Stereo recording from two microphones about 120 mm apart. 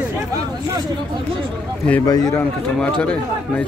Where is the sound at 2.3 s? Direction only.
10° left (ahead or behind).